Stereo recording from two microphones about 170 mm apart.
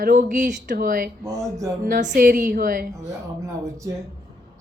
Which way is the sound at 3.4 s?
20° right (ahead or behind).